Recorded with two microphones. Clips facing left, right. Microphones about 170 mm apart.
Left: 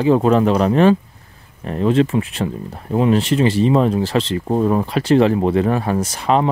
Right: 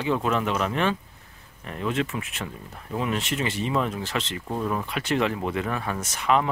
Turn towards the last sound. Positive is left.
turn(degrees=30)  # may be behind; listen again after turning